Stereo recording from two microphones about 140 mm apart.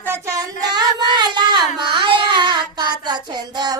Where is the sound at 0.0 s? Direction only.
20° right (ahead or behind).